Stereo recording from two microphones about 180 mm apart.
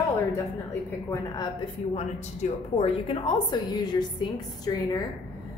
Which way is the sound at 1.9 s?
35° left (ahead or behind).